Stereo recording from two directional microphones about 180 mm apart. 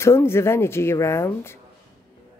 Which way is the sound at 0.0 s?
15° left (ahead or behind).